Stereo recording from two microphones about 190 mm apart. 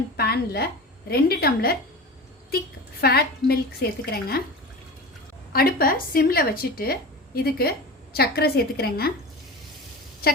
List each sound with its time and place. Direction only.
0.2 s a woman's voice: 55° left (ahead or behind)
3.0 s a woman's voice: 55° left (ahead or behind)
5.5 s a woman's voice: 50° left (ahead or behind)